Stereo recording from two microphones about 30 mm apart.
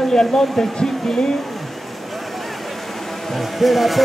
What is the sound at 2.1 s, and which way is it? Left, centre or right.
Vehicle, centre.